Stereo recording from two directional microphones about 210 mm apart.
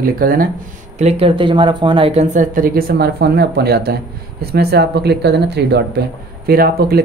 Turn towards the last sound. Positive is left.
turn(degrees=-45)  # may be behind; listen again after turning